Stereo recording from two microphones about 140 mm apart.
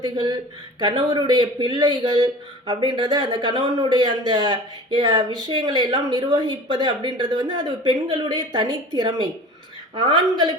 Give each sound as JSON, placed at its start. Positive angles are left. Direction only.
{"t": 0.0, "sound": "speech", "side_deg": -30}